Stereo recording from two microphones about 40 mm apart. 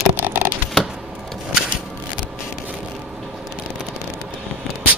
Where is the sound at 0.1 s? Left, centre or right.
Right.